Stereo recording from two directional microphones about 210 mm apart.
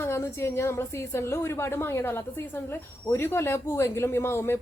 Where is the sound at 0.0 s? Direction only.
10° left (ahead or behind).